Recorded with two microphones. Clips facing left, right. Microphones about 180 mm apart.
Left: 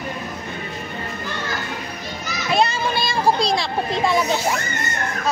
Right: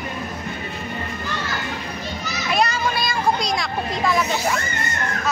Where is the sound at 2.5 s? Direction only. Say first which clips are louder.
Left 2 dB; 30° left (ahead or behind).